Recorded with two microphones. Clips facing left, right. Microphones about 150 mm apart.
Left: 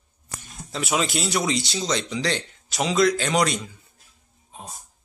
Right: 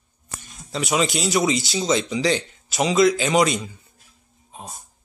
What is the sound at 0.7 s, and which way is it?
Speech, centre (ahead or behind).